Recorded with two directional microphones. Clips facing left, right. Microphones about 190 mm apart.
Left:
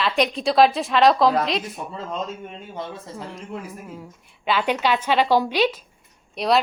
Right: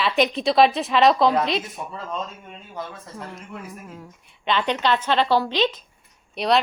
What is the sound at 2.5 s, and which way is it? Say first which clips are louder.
Speech: left 2 dB; 20° left (ahead or behind).